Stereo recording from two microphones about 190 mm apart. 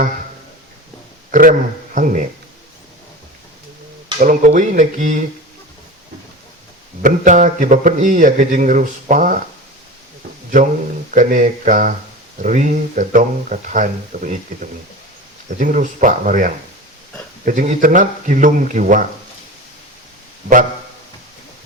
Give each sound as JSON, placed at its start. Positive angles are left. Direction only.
{"t": 1.3, "sound": "a sound", "side_deg": -45}
{"t": 2.0, "sound": "music", "side_deg": -45}
{"t": 4.2, "sound": "a man's voice", "side_deg": -45}
{"t": 7.0, "sound": "a man's voice", "side_deg": -40}
{"t": 11.1, "sound": "a man's voice", "side_deg": -45}